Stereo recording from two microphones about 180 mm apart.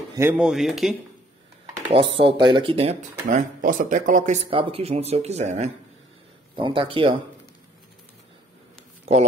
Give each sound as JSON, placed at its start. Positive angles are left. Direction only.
{"t": 0.1, "sound": "speech", "side_deg": -15}
{"t": 0.4, "sound": "speech", "side_deg": 0}
{"t": 1.9, "sound": "speech", "side_deg": -30}
{"t": 4.5, "sound": "speech", "side_deg": -30}